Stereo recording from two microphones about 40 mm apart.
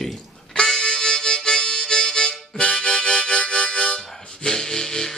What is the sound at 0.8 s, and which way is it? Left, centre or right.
Harmonica, left.